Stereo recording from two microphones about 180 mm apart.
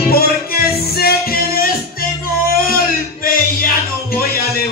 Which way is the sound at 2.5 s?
55° left (ahead or behind).